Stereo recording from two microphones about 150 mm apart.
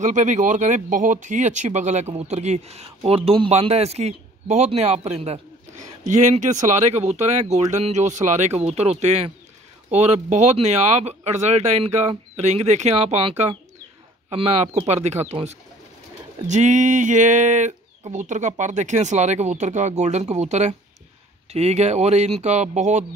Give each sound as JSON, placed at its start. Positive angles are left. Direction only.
{"t": 0.0, "sound": "speech", "side_deg": -55}